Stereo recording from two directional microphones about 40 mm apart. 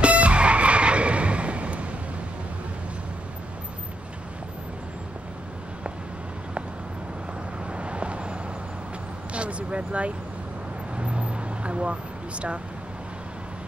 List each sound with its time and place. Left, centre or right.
0.0 s music: right
7.7 s vehicle: right